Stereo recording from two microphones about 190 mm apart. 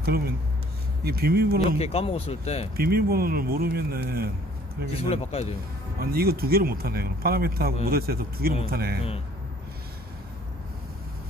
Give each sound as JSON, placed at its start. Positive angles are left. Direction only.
{"t": 0.0, "sound": "speech", "side_deg": -55}
{"t": 1.8, "sound": "speech", "side_deg": 30}
{"t": 2.7, "sound": "speech", "side_deg": -55}
{"t": 4.9, "sound": "speech", "side_deg": 30}
{"t": 5.9, "sound": "speech", "side_deg": -55}